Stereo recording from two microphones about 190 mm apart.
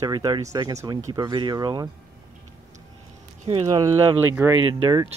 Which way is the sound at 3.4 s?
30° right (ahead or behind).